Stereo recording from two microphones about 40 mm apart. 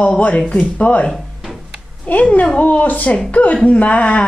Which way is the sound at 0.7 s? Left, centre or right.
Left.